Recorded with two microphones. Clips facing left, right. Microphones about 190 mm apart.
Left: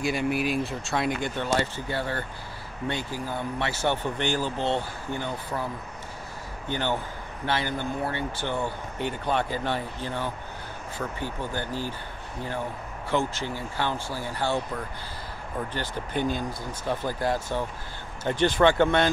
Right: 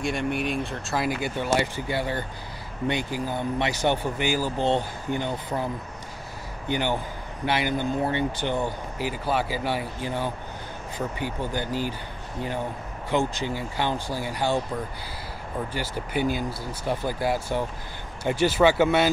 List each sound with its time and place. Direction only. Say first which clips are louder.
0.0 s speech: left 1 dB; 5° left (ahead or behind); by 5.7 s 15° right (ahead or behind)
6.7 s speech: right 2 dB; 15° right (ahead or behind)
8.9 s speech: even; 5° right (ahead or behind)
13.1 s speech: right 2 dB; 15° right (ahead or behind)
15.7 s speech: right 2 dB; 10° right (ahead or behind)